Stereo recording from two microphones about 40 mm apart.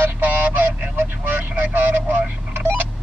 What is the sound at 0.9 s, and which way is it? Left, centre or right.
Vehicle, right.